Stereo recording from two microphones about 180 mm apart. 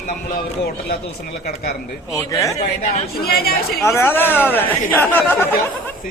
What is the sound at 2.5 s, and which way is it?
Speech, 35° left (ahead or behind).